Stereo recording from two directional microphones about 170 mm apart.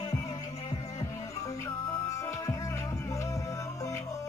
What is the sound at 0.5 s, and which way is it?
Music, 35° left (ahead or behind).